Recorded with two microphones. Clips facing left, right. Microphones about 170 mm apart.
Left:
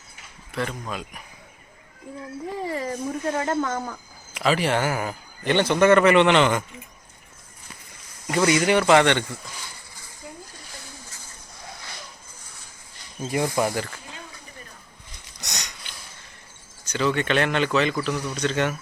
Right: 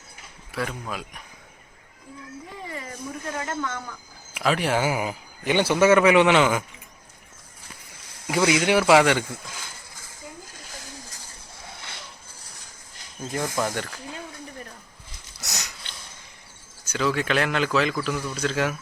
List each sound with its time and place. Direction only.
0.5 s a man's voice: 5° right (ahead or behind)
2.6 s speech: 35° left (ahead or behind)
4.4 s a man's voice: centre (ahead or behind)
8.3 s a man's voice: 5° right (ahead or behind)
13.7 s a man's voice: centre (ahead or behind)
15.4 s sniff: centre (ahead or behind)
16.8 s a man's voice: centre (ahead or behind)